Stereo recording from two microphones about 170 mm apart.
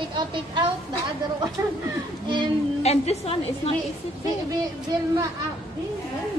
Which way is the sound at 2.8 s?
40° left (ahead or behind).